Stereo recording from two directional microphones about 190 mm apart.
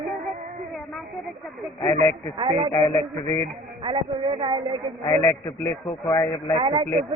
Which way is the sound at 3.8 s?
25° right (ahead or behind).